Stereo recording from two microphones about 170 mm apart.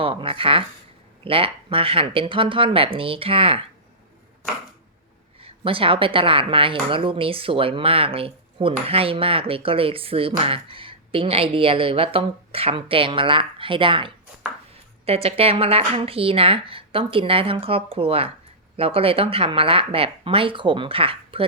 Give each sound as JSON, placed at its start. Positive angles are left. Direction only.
{"t": 0.0, "sound": "speech", "side_deg": -30}
{"t": 5.4, "sound": "speech", "side_deg": -30}